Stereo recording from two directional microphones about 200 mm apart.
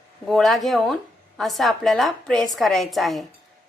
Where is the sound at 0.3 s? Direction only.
Centre (ahead or behind).